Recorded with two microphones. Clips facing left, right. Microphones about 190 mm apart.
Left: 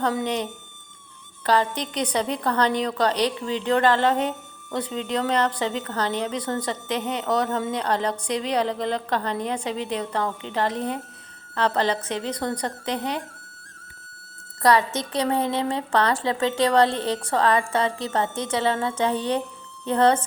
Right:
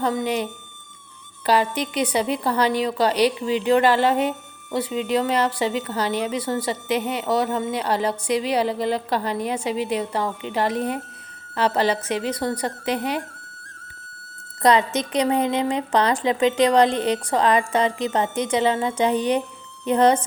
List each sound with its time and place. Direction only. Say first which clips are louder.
0.0 s speech: right 1 dB; 5° left (ahead or behind)
1.5 s a woman's voice: right 2 dB; 10° right (ahead or behind)
14.6 s a woman's voice: right 2 dB; 20° right (ahead or behind)